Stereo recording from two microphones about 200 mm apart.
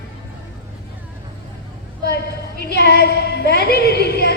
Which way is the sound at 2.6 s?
55° left (ahead or behind).